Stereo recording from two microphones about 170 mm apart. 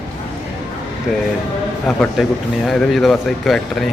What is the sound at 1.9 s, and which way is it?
A man's voice, 5° left (ahead or behind).